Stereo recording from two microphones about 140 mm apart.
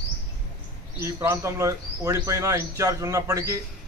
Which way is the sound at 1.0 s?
20° right (ahead or behind).